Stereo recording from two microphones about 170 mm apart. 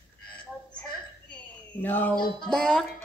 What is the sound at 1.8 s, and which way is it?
Speech, 10° left (ahead or behind).